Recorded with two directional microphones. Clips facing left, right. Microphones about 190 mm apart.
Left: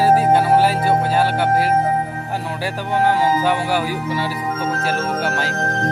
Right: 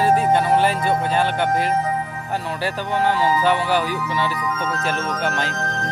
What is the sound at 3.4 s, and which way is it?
Speech, 10° left (ahead or behind).